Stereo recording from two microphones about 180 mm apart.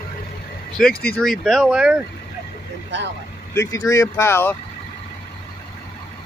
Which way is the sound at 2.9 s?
80° right.